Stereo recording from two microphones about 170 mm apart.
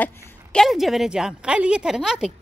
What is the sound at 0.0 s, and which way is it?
A woman's voice, 15° left (ahead or behind).